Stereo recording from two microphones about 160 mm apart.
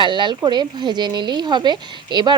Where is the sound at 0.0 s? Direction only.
30° right (ahead or behind).